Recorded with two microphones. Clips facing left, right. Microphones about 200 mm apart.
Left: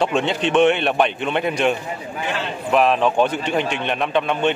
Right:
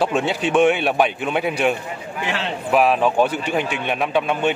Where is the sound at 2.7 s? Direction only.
5° right (ahead or behind).